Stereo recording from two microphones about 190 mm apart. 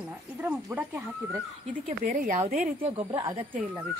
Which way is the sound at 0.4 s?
10° right (ahead or behind).